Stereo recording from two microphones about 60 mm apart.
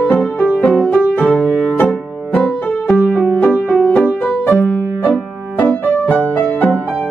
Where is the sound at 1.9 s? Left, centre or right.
Centre.